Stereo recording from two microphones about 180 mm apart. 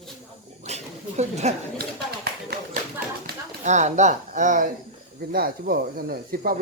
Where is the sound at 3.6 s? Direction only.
40° right (ahead or behind).